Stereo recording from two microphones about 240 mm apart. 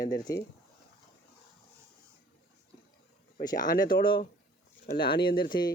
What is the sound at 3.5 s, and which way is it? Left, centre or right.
Speech, left.